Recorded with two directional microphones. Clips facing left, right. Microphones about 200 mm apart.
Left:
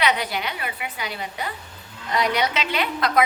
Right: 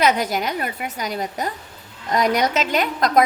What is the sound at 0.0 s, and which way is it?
A woman's voice, 45° right (ahead or behind).